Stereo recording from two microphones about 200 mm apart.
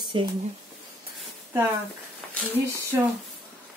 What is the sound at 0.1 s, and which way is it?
Speech, 25° right (ahead or behind).